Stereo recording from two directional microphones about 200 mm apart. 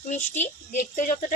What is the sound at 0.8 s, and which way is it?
Speech, 40° left (ahead or behind).